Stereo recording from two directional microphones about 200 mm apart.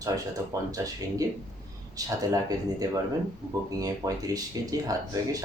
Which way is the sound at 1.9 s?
15° right (ahead or behind).